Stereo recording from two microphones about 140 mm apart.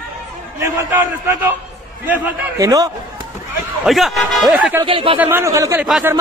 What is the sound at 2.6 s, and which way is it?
Speech, 25° right (ahead or behind).